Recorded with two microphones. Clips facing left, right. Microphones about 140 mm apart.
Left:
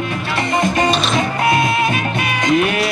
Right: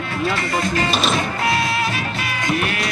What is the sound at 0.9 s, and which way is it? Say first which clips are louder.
Music: left 3 dB; centre (ahead or behind).